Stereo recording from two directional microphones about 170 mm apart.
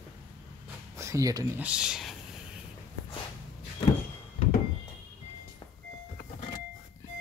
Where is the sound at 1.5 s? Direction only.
5° right (ahead or behind).